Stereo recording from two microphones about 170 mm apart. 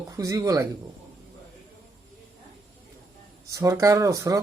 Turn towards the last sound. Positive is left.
turn(degrees=-20)  # may be behind; listen again after turning